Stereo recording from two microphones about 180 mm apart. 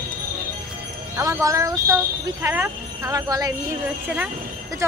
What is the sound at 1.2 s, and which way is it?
Speech, 20° right (ahead or behind).